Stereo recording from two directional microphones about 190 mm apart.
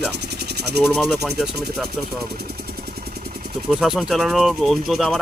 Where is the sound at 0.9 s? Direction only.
Centre (ahead or behind).